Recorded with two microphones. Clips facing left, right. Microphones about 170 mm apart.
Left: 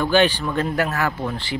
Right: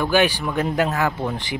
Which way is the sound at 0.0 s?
10° right (ahead or behind).